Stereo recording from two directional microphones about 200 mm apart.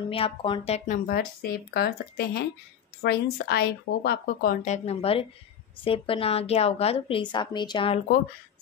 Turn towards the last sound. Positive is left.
turn(degrees=25)  # may be behind; listen again after turning